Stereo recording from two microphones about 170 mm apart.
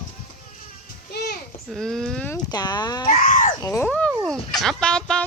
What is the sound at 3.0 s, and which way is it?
Screaming, 55° left (ahead or behind).